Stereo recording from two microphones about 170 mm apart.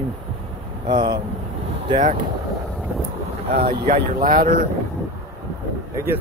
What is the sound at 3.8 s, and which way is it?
Speech, 60° right (ahead or behind).